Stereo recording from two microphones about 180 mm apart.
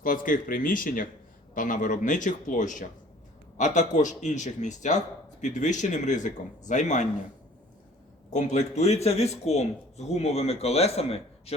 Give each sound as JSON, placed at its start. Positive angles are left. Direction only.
{"t": 0.0, "sound": "a man's voice", "side_deg": 50}
{"t": 8.3, "sound": "a man's voice", "side_deg": 40}